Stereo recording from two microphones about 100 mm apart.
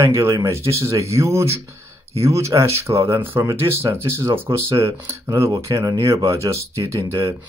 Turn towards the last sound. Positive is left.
turn(degrees=-30)  # may be behind; listen again after turning